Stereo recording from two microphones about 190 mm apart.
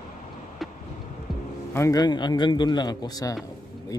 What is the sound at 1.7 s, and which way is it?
Speech, 20° left (ahead or behind).